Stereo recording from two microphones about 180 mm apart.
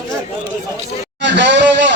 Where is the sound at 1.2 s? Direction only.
80° right.